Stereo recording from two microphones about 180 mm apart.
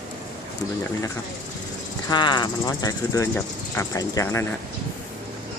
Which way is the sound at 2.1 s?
25° left (ahead or behind).